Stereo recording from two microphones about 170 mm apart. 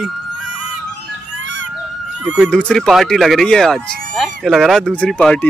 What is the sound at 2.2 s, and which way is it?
Speech, 5° right (ahead or behind).